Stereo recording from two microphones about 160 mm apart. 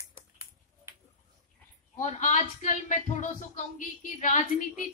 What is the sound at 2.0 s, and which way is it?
A woman's voice, 45° left (ahead or behind).